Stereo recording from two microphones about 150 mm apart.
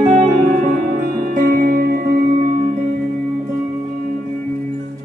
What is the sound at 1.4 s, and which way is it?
Music, 65° right (ahead or behind).